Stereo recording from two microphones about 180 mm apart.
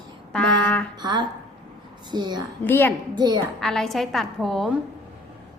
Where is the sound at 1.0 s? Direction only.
25° right (ahead or behind).